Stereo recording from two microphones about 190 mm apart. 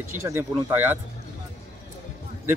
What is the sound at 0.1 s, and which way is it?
Speech, 10° right (ahead or behind).